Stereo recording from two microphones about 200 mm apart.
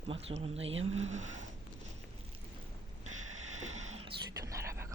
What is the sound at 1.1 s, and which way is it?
Speech, 35° right (ahead or behind).